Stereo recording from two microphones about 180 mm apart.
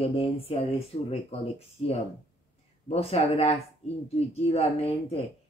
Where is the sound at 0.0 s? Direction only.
35° left (ahead or behind).